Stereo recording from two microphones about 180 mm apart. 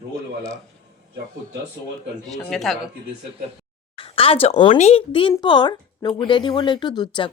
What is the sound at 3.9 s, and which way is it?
A woman's voice, 30° left (ahead or behind).